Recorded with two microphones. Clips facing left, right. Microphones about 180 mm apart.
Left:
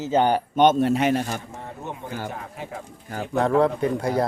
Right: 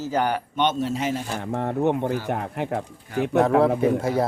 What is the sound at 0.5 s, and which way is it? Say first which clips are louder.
Speech: left 7 dB; 55° left (ahead or behind).